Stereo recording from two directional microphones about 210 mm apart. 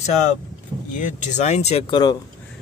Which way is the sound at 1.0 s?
35° left (ahead or behind).